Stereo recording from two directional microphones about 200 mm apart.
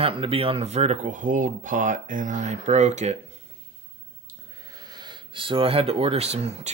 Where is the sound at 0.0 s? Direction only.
25° right (ahead or behind).